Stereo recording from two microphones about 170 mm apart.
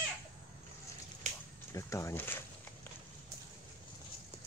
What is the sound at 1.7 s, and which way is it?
Speech, 20° left (ahead or behind).